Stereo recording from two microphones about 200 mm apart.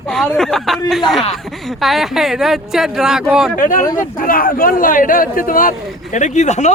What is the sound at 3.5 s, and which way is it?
A man's voice, 40° left (ahead or behind).